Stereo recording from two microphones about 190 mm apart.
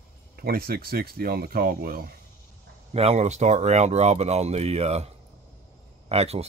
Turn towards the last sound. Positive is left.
turn(degrees=-35)  # may be behind; listen again after turning